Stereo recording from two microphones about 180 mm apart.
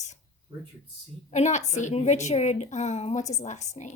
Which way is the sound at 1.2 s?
40° left (ahead or behind).